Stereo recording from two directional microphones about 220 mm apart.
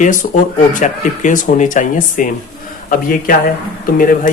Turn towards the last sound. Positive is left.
turn(degrees=40)  # may be behind; listen again after turning